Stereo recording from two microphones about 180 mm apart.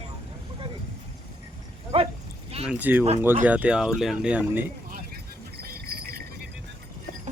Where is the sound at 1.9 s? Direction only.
30° right (ahead or behind).